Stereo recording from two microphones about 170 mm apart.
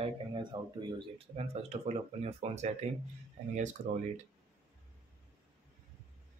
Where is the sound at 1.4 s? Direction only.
35° right (ahead or behind).